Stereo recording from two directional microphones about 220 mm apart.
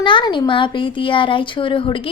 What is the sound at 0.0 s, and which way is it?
A woman's voice, 20° left (ahead or behind).